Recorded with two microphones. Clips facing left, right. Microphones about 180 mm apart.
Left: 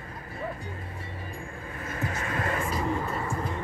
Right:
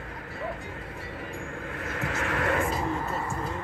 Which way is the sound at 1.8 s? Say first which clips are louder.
Right 1 dB; 75° right (ahead or behind).